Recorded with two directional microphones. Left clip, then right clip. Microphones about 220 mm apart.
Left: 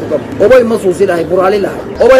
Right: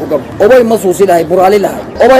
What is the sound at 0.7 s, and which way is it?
Speech, 40° right (ahead or behind).